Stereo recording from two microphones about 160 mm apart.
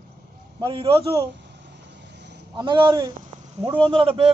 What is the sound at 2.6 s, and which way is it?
Speech, 30° right (ahead or behind).